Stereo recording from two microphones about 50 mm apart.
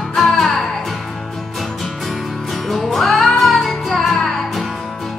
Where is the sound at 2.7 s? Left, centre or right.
Centre.